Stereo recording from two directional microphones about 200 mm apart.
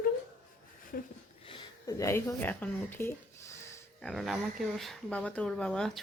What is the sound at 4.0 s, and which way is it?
Speech, centre (ahead or behind).